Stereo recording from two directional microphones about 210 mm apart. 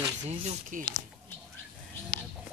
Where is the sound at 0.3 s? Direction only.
35° right (ahead or behind).